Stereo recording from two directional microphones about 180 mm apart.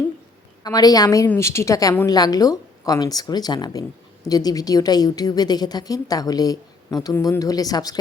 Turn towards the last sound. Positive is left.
turn(degrees=20)  # may be behind; listen again after turning